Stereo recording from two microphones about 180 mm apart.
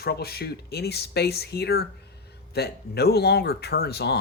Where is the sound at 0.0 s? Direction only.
60° left (ahead or behind).